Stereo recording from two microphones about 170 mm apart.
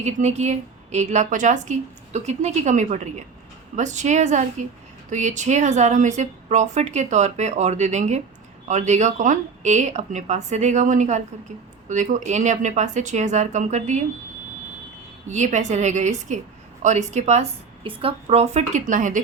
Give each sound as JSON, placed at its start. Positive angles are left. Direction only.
{"t": 0.0, "sound": "a woman's voice", "side_deg": -40}
{"t": 15.3, "sound": "a woman's voice", "side_deg": -45}